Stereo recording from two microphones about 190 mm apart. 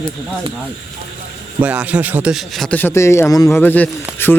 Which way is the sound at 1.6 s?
5° right (ahead or behind).